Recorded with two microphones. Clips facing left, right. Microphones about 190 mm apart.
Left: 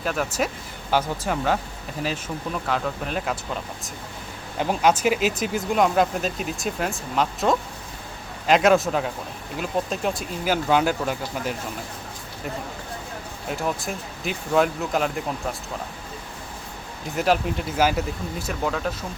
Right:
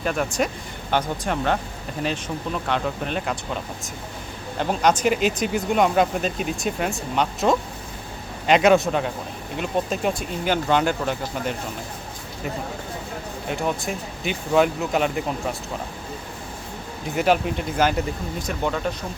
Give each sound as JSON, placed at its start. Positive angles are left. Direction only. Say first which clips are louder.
{"t": 0.0, "sound": "speech", "louder": "right 2 dB", "side_deg": 0}
{"t": 4.5, "sound": "speech", "louder": "even", "side_deg": 5}
{"t": 13.5, "sound": "speech", "louder": "right 1 dB", "side_deg": 0}
{"t": 17.2, "sound": "speech", "louder": "right 1 dB", "side_deg": 0}